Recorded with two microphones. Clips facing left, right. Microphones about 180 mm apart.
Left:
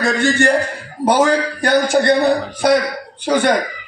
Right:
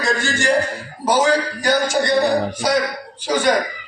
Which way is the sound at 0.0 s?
60° left (ahead or behind).